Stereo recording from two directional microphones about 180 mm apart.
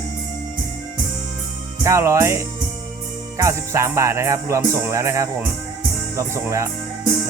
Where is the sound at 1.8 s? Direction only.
15° right (ahead or behind).